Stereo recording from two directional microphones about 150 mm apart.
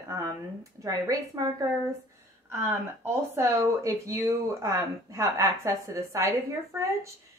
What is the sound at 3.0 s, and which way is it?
Speech, 15° right (ahead or behind).